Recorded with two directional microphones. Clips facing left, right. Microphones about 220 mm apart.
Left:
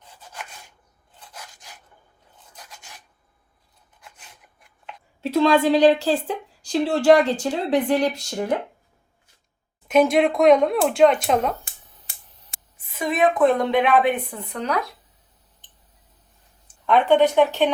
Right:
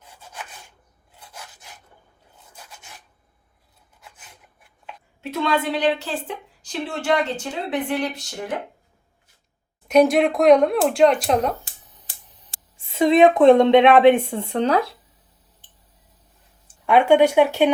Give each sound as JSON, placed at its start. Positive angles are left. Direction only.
{"t": 5.4, "sound": "a woman's voice", "side_deg": 35}
{"t": 9.9, "sound": "speech", "side_deg": 0}
{"t": 12.7, "sound": "a woman's voice", "side_deg": -25}
{"t": 16.6, "sound": "speech", "side_deg": -10}